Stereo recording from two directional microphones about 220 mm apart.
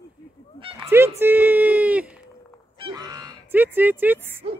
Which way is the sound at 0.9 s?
10° right (ahead or behind).